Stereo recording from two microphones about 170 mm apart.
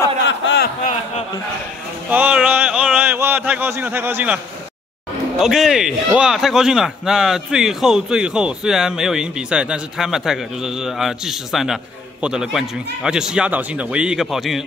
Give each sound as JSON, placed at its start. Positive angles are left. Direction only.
{"t": 0.3, "sound": "a sound", "side_deg": 90}
{"t": 2.0, "sound": "speech", "side_deg": -10}
{"t": 5.4, "sound": "a man's voice", "side_deg": -5}